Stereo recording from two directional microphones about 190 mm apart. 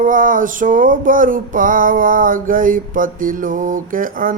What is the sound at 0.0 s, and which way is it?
Music, 45° right (ahead or behind).